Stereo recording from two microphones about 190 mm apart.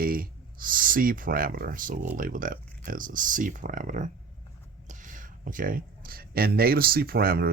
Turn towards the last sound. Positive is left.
turn(degrees=-50)  # may be behind; listen again after turning